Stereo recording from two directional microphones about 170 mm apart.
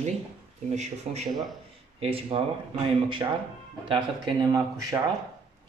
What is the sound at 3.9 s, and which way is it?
Speech, 25° right (ahead or behind).